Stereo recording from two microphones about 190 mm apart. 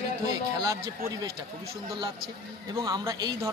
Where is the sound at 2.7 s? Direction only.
20° right (ahead or behind).